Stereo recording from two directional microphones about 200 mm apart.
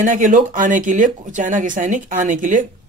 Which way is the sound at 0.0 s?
40° right (ahead or behind).